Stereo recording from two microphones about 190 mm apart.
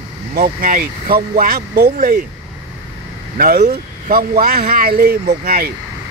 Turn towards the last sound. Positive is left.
turn(degrees=-50)  # may be behind; listen again after turning